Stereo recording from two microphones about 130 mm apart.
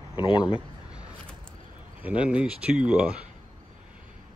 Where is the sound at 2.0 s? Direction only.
10° right (ahead or behind).